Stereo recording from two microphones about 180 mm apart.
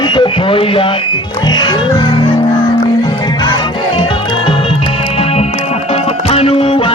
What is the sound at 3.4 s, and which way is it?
Music, 25° left (ahead or behind).